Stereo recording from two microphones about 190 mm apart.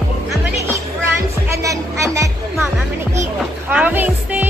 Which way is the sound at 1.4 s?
15° right (ahead or behind).